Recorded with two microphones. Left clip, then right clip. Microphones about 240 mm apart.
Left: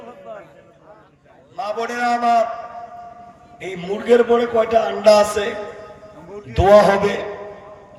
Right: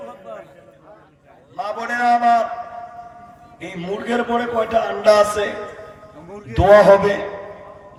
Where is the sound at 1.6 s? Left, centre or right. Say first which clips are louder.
Right 1 dB; left.